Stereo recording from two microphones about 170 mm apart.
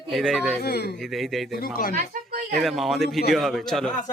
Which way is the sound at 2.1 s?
55° right (ahead or behind).